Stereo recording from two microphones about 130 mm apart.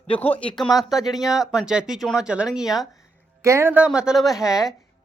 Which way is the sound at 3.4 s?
20° right (ahead or behind).